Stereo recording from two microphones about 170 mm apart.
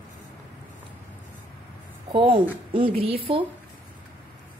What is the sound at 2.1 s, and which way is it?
A woman's voice, 30° right (ahead or behind).